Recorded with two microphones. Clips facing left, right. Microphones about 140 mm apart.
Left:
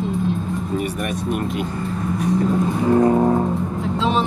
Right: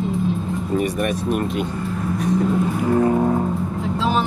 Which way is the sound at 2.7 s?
30° left (ahead or behind).